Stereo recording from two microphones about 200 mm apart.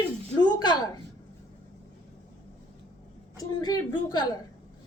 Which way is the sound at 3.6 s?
20° left (ahead or behind).